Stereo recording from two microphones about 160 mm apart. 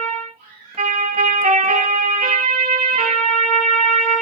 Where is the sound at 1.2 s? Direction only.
45° right (ahead or behind).